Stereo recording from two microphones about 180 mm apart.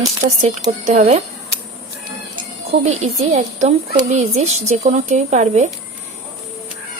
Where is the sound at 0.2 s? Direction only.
65° right (ahead or behind).